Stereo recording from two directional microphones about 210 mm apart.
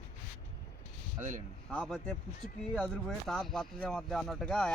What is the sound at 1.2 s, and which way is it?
Speech, 35° right (ahead or behind).